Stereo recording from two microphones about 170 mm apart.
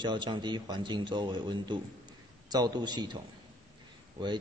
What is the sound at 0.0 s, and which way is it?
A man's voice, 30° right (ahead or behind).